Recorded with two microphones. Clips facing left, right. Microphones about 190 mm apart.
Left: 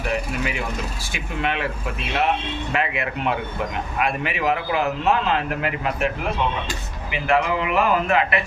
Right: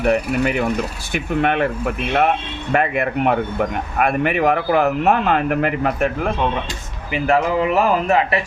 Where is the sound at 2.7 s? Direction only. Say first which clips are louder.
Right 8 dB; 50° right (ahead or behind).